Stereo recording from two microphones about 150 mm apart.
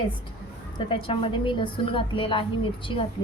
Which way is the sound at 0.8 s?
35° left (ahead or behind).